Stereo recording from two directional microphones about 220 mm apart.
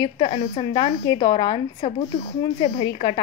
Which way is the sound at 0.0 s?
25° left (ahead or behind).